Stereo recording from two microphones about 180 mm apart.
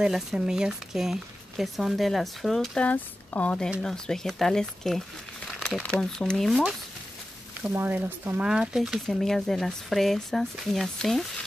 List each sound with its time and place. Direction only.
0.0 s speech: centre (ahead or behind)
7.6 s speech: 10° right (ahead or behind)